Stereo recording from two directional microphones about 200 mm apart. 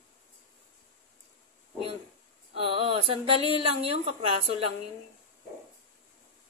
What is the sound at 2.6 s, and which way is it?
Speech, 25° right (ahead or behind).